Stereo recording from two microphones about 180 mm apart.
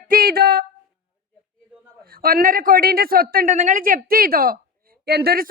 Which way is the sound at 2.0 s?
55° right (ahead or behind).